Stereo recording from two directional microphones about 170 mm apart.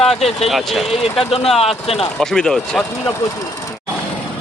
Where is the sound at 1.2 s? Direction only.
35° left (ahead or behind).